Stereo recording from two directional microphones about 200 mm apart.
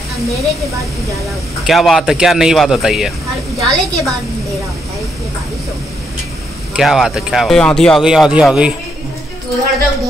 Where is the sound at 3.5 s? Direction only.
15° right (ahead or behind).